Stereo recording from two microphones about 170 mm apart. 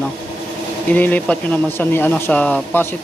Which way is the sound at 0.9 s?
10° left (ahead or behind).